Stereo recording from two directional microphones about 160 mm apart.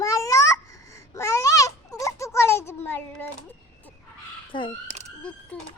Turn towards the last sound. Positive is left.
turn(degrees=10)  # may be behind; listen again after turning